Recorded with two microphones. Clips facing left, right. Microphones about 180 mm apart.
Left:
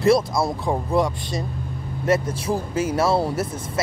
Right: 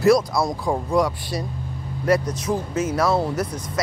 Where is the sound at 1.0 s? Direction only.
20° left (ahead or behind).